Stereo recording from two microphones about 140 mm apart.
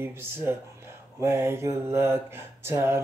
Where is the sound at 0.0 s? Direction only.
15° right (ahead or behind).